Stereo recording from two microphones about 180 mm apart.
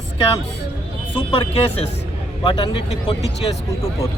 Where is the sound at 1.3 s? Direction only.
30° left (ahead or behind).